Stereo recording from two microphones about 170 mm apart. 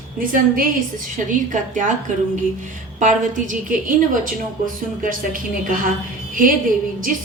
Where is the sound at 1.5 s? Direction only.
45° right (ahead or behind).